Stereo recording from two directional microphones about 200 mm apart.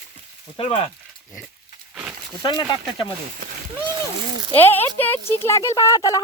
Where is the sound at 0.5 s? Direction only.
25° left (ahead or behind).